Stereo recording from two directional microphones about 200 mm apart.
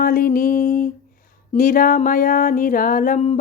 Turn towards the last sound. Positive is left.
turn(degrees=40)  # may be behind; listen again after turning